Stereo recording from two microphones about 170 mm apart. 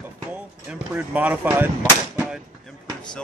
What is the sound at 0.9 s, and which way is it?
Speech, 10° right (ahead or behind).